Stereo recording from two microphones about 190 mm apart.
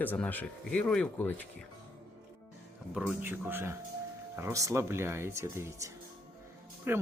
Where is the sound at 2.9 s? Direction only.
10° right (ahead or behind).